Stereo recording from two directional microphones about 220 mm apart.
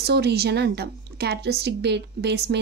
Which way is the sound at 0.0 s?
50° right (ahead or behind).